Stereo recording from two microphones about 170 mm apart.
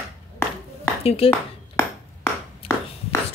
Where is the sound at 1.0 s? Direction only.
35° left (ahead or behind).